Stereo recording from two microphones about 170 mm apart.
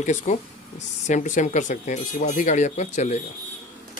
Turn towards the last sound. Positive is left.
turn(degrees=45)  # may be behind; listen again after turning